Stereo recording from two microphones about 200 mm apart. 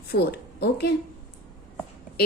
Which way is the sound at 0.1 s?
55° left (ahead or behind).